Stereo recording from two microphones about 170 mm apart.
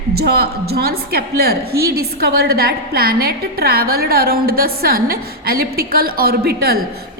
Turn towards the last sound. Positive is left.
turn(degrees=-65)  # may be behind; listen again after turning